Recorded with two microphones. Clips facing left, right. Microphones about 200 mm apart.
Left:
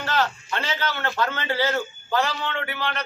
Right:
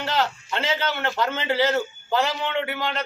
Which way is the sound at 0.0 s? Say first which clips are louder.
Even; 20° right (ahead or behind).